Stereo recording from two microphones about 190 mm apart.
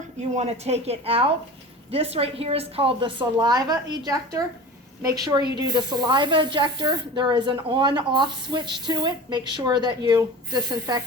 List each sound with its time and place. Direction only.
0.2 s speech: 35° right (ahead or behind)